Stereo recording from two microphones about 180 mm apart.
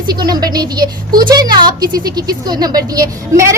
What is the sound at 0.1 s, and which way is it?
A woman's voice, 20° right (ahead or behind).